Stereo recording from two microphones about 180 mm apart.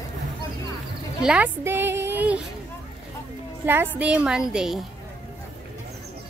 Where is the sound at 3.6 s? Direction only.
10° right (ahead or behind).